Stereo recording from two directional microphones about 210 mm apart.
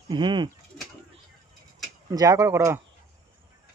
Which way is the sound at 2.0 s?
15° right (ahead or behind).